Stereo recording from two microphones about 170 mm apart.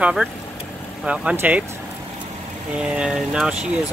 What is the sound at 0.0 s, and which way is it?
Speech, 5° right (ahead or behind).